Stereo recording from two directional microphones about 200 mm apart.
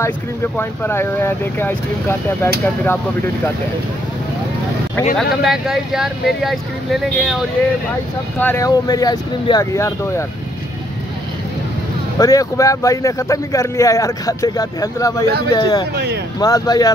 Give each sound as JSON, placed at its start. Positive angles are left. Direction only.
{"t": 0.0, "sound": "speech", "side_deg": 10}
{"t": 5.1, "sound": "speech", "side_deg": 0}
{"t": 8.4, "sound": "speech", "side_deg": 10}
{"t": 12.2, "sound": "speech", "side_deg": 15}